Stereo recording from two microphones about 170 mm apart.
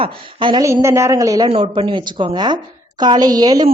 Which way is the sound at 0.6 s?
15° right (ahead or behind).